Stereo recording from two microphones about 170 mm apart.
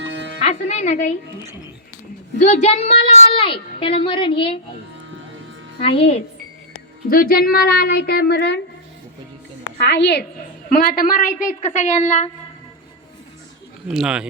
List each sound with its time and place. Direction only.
0.0 s music: 90° right
0.4 s music: 40° left (ahead or behind)
2.4 s a woman's voice: 40° left (ahead or behind)
5.8 s a woman's voice: 35° left (ahead or behind)
7.1 s a child's voice: 60° left (ahead or behind); by 8.6 s 80° left
9.7 s a woman's voice: 90° left
10.7 s a woman's voice: 60° left (ahead or behind); by 12.3 s 40° left (ahead or behind)
13.8 s speech: 5° right (ahead or behind)